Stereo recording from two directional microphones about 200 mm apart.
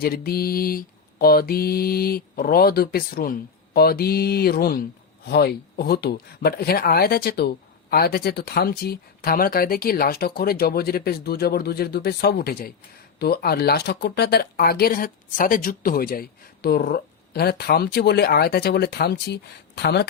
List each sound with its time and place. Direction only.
0.0 s speech: 50° left (ahead or behind)